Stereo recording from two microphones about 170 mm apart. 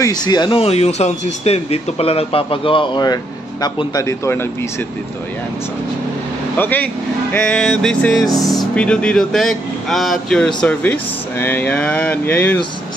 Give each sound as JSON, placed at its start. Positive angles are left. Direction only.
{"t": 0.0, "sound": "speech", "side_deg": 25}
{"t": 6.5, "sound": "speech", "side_deg": 10}
{"t": 7.3, "sound": "music", "side_deg": 5}
{"t": 8.5, "sound": "speech", "side_deg": 5}